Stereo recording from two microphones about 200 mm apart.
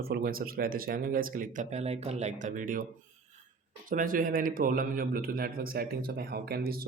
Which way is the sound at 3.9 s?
45° right (ahead or behind).